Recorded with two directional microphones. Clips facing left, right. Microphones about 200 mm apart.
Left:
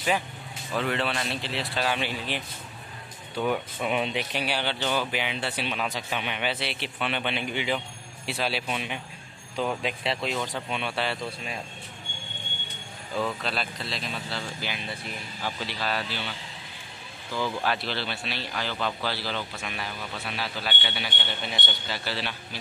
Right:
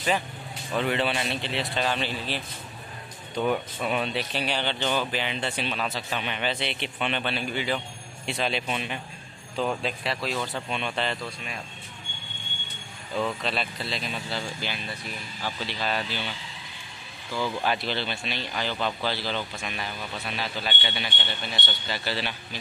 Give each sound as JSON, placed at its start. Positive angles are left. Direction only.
{"t": 0.7, "sound": "speech", "side_deg": 0}
{"t": 8.3, "sound": "speech", "side_deg": 5}
{"t": 11.1, "sound": "a man's voice", "side_deg": 25}
{"t": 13.1, "sound": "speech", "side_deg": 0}
{"t": 17.6, "sound": "speech", "side_deg": 0}
{"t": 21.4, "sound": "a man's voice", "side_deg": 20}
{"t": 21.8, "sound": "speech", "side_deg": 0}